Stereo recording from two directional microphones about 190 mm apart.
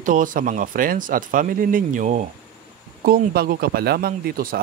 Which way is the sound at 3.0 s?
55° right (ahead or behind).